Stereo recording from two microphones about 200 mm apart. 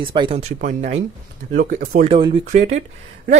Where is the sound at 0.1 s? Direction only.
25° right (ahead or behind).